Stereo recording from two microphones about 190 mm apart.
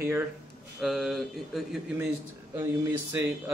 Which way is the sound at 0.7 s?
Centre (ahead or behind).